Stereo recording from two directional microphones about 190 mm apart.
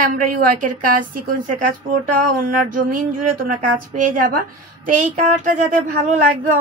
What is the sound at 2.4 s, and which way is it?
Speech, 45° right (ahead or behind).